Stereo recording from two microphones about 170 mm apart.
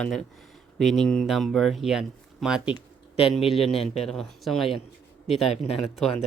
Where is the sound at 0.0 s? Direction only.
5° left (ahead or behind).